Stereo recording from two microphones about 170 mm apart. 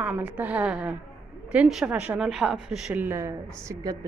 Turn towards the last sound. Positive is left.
turn(degrees=-20)  # may be behind; listen again after turning